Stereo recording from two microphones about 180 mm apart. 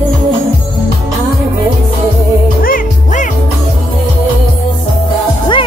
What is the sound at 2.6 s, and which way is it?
Music, 45° left (ahead or behind).